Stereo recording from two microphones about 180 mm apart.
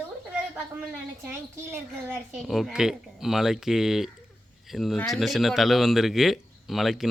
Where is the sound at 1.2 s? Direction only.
10° right (ahead or behind).